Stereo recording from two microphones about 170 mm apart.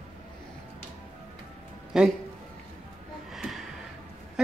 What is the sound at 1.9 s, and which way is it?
Speech, 5° right (ahead or behind).